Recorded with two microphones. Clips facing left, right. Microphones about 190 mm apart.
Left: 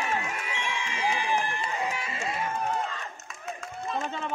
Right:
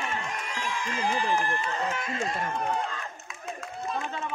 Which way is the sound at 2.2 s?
5° left (ahead or behind).